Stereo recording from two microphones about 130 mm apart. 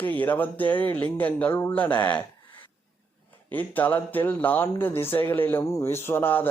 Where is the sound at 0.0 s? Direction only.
15° left (ahead or behind).